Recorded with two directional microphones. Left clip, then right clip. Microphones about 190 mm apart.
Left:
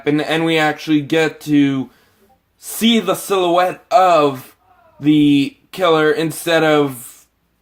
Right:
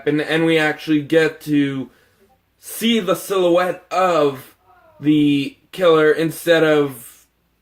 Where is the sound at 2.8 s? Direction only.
50° left (ahead or behind).